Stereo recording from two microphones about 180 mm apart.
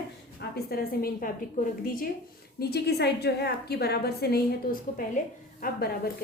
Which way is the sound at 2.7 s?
65° left (ahead or behind).